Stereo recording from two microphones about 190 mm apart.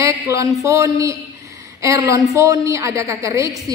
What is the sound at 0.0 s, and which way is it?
A man's voice, 15° right (ahead or behind).